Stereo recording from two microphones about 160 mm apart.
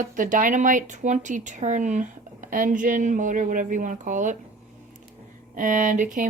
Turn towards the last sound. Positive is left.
turn(degrees=-50)  # may be behind; listen again after turning